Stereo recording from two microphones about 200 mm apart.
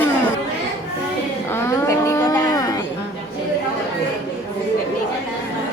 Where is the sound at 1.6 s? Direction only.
15° left (ahead or behind).